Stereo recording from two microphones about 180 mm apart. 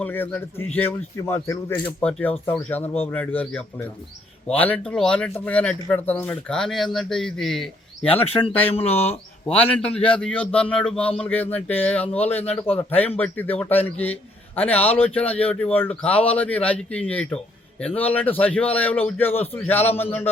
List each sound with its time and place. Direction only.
0.0 s a man's voice: 10° left (ahead or behind)
8.1 s speech: 30° left (ahead or behind)
9.8 s a man's voice: 5° left (ahead or behind)